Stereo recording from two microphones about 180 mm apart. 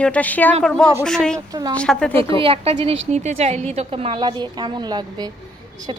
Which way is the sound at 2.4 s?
35° right (ahead or behind).